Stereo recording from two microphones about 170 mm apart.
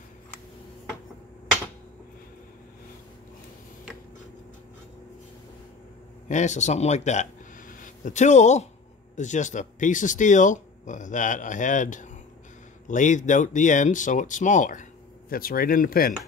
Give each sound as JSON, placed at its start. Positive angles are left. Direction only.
{"t": 6.2, "sound": "speech", "side_deg": 45}